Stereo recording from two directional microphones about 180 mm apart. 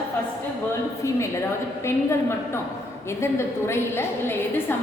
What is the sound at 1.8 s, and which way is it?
A woman's voice, 15° left (ahead or behind).